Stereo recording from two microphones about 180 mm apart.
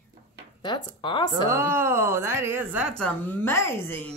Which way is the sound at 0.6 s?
25° left (ahead or behind).